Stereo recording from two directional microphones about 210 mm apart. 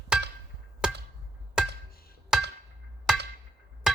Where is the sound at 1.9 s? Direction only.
45° left (ahead or behind).